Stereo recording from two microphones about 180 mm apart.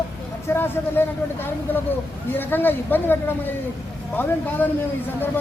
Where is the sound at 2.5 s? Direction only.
10° left (ahead or behind).